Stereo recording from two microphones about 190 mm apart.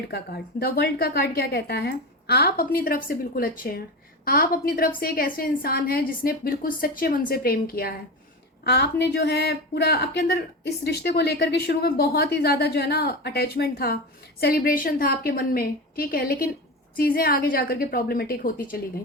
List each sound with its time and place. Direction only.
0.1 s a woman's voice: 55° left (ahead or behind)